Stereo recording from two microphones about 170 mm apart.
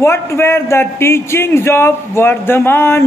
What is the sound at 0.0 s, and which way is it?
Speech, 15° left (ahead or behind).